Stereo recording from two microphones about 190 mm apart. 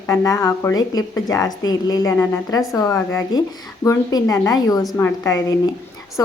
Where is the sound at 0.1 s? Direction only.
20° left (ahead or behind).